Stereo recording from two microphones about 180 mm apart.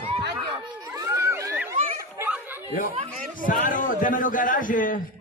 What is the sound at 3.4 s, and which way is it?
A man's voice, 50° left (ahead or behind).